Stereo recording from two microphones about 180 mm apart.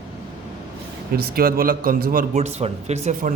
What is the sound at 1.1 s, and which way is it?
A man's voice, 60° right (ahead or behind).